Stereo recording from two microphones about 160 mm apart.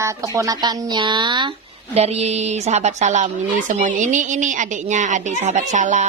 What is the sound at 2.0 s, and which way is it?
A woman's voice, 45° right (ahead or behind).